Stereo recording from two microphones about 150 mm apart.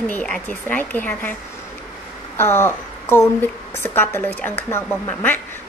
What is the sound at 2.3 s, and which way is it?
A woman's voice, 15° left (ahead or behind).